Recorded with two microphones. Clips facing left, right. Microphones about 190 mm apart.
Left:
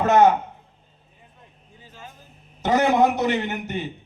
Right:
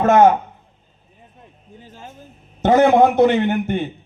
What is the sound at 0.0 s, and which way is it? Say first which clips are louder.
Speech: right 4 dB; 50° right (ahead or behind).